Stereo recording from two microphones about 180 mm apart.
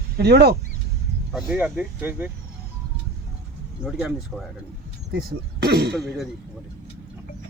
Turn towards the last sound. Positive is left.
turn(degrees=0)  # may be behind; listen again after turning